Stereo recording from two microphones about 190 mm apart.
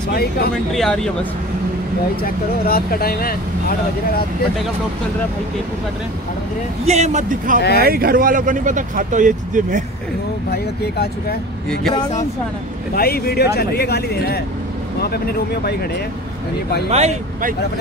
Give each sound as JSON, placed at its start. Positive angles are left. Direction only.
{"t": 0.7, "sound": "speech", "side_deg": 5}
{"t": 2.2, "sound": "speech", "side_deg": 50}
{"t": 6.9, "sound": "speech", "side_deg": -35}
{"t": 10.5, "sound": "speech", "side_deg": 55}
{"t": 12.9, "sound": "speech", "side_deg": 55}
{"t": 16.9, "sound": "speech", "side_deg": -35}